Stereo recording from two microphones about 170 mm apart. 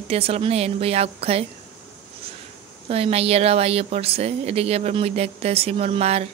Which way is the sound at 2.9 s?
35° right (ahead or behind).